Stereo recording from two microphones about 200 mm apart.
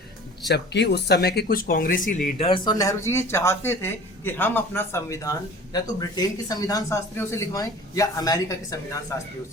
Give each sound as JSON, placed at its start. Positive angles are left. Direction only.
{"t": 0.4, "sound": "speech", "side_deg": 60}
{"t": 2.2, "sound": "speech", "side_deg": 25}